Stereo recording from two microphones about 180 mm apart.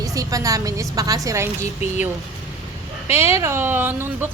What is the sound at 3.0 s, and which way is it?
Speech, 35° left (ahead or behind).